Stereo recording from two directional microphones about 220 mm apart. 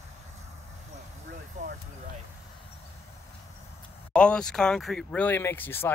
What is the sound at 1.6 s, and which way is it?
Vehicle, 35° right (ahead or behind).